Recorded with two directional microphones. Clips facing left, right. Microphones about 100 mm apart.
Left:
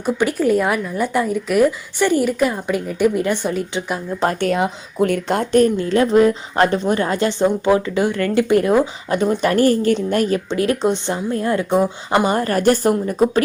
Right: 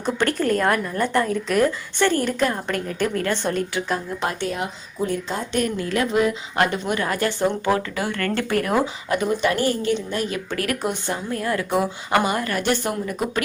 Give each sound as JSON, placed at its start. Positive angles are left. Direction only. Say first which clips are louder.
{"t": 0.0, "sound": "a woman's voice", "louder": "left 4 dB", "side_deg": 10}
{"t": 4.4, "sound": "speech", "louder": "left 8 dB", "side_deg": 70}
{"t": 5.5, "sound": "speech", "louder": "left 9 dB", "side_deg": 35}
{"t": 10.5, "sound": "speech", "louder": "left 7 dB", "side_deg": 25}